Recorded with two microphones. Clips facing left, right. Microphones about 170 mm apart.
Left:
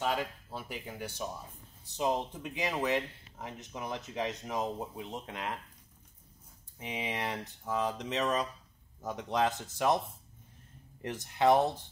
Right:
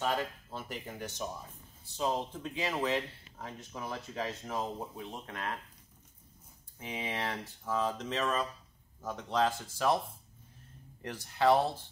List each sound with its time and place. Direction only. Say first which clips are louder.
0.0 s speech: even; 10° left (ahead or behind)
6.8 s speech: left 1 dB; 15° left (ahead or behind)
11.0 s speech: left 1 dB; 20° left (ahead or behind)